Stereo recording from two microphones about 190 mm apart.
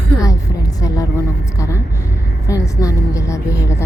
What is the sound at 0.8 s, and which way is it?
Speech, 20° left (ahead or behind).